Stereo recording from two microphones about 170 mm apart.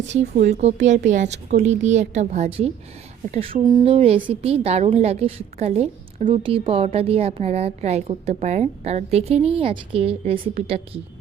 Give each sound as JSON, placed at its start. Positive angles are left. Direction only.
{"t": 0.1, "sound": "a woman's voice", "side_deg": -45}